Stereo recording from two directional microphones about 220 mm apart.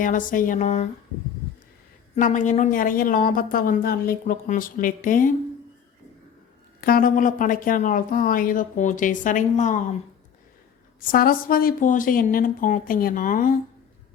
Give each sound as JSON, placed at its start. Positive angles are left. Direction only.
{"t": 0.0, "sound": "a woman's voice", "side_deg": 35}
{"t": 2.1, "sound": "a woman's voice", "side_deg": 35}
{"t": 6.8, "sound": "a woman's voice", "side_deg": 40}
{"t": 11.1, "sound": "a woman's voice", "side_deg": 40}